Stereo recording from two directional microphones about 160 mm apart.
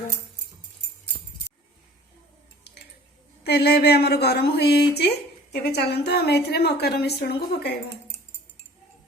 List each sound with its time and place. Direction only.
3.4 s speech: 85° left